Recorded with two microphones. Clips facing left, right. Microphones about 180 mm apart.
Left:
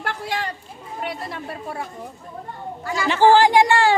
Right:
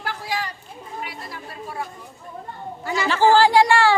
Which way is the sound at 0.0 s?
60° left (ahead or behind).